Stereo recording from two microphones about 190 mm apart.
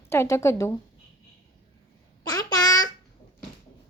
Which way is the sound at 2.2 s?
20° left (ahead or behind).